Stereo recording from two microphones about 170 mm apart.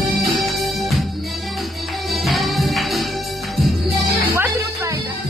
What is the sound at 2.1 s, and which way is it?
Music, centre (ahead or behind).